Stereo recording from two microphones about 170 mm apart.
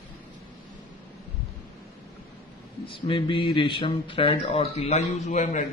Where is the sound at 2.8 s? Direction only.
30° left (ahead or behind).